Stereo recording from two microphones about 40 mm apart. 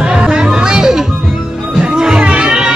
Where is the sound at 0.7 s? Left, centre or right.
Centre.